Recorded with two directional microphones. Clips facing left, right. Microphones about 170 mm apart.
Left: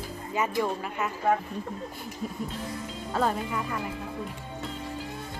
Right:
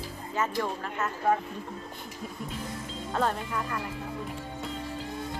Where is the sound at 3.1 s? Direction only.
5° left (ahead or behind).